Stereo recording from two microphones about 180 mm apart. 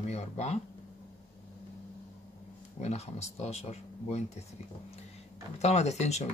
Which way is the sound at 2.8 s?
40° left (ahead or behind).